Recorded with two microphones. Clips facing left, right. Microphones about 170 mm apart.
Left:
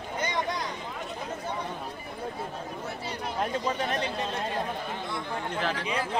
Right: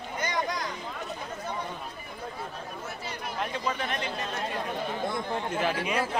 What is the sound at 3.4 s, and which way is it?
Speech, 40° left (ahead or behind).